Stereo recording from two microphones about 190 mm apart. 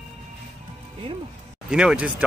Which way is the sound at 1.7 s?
5° right (ahead or behind).